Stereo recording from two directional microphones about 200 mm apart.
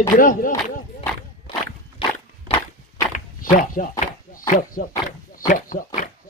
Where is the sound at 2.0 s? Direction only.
25° left (ahead or behind).